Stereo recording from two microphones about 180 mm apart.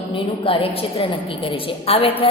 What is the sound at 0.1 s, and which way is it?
A woman's voice, 30° left (ahead or behind).